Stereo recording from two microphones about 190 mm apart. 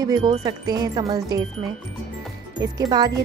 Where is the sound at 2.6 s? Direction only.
20° right (ahead or behind).